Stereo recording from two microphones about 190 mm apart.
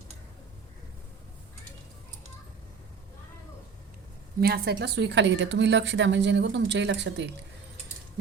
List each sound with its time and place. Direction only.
4.4 s a woman's voice: 55° right (ahead or behind)